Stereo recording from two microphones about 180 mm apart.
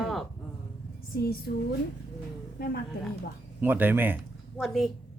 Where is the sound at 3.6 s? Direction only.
10° right (ahead or behind).